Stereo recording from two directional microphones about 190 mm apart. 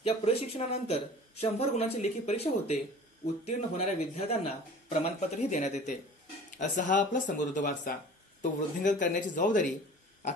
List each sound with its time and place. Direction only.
0.0 s speech: 30° left (ahead or behind)